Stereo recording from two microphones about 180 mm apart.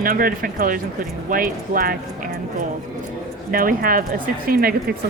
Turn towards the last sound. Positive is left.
turn(degrees=-55)  # may be behind; listen again after turning